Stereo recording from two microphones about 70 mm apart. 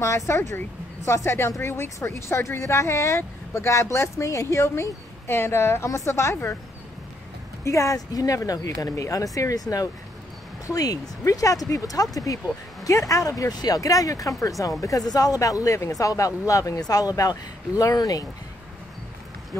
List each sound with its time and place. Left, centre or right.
0.0 s a woman's voice: left
7.6 s speech: left
13.5 s speech: left
19.5 s a woman's voice: left